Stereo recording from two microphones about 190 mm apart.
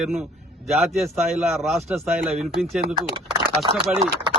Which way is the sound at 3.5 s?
30° right (ahead or behind).